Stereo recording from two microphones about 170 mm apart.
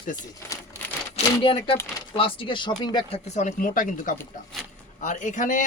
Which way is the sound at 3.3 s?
50° left (ahead or behind).